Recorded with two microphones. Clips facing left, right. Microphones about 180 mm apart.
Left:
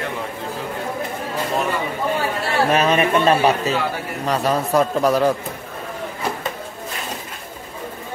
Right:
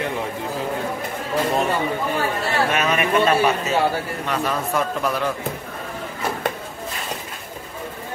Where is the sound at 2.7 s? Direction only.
35° left (ahead or behind).